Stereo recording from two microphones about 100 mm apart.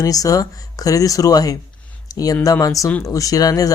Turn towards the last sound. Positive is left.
turn(degrees=40)  # may be behind; listen again after turning